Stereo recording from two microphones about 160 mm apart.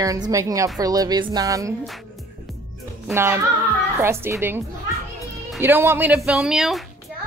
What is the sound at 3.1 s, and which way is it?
Speech, 15° right (ahead or behind).